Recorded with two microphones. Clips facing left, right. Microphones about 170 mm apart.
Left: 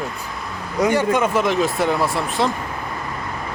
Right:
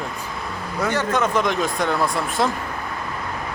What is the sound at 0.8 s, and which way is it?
Speech, 10° left (ahead or behind).